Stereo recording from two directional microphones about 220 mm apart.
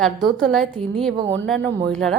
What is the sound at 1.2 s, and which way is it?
Speech, 55° right (ahead or behind).